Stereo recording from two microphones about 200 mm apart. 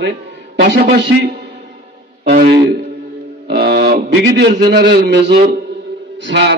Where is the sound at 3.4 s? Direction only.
55° right (ahead or behind).